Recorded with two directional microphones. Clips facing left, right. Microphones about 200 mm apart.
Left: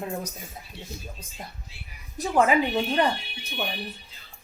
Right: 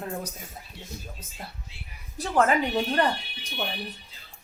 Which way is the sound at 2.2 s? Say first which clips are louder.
Left 1 dB; 10° left (ahead or behind).